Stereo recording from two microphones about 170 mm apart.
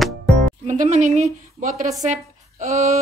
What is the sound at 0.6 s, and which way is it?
Speech, 45° right (ahead or behind).